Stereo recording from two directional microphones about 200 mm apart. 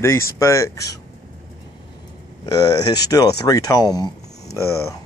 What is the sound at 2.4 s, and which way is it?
Speech, 20° left (ahead or behind).